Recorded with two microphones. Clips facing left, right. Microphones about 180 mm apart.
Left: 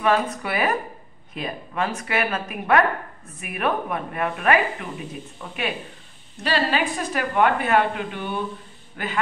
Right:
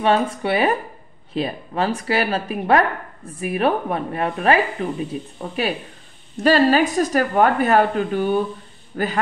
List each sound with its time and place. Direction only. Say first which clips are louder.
0.0 s a woman's voice: right 3 dB; 30° right (ahead or behind)